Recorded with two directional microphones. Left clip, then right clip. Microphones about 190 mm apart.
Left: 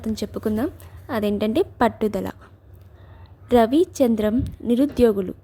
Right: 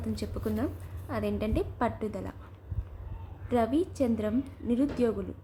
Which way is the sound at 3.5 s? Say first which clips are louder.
Left 11 dB; 40° left (ahead or behind).